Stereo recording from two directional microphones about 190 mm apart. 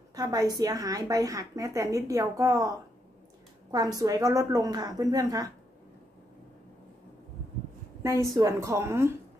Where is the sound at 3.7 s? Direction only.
20° right (ahead or behind).